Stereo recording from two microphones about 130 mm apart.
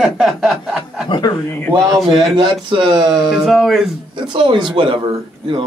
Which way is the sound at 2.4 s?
40° right (ahead or behind).